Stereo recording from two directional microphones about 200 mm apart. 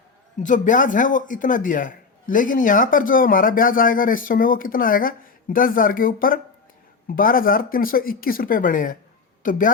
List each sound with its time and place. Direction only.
0.4 s a man's voice: 40° left (ahead or behind)